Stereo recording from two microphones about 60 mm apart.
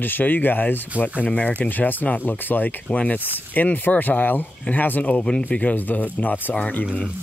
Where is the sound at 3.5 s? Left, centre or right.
Left.